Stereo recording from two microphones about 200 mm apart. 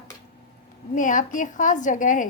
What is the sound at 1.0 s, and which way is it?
A woman's voice, 40° left (ahead or behind).